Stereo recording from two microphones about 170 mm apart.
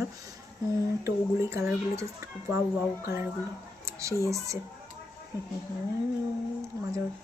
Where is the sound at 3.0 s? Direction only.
15° right (ahead or behind).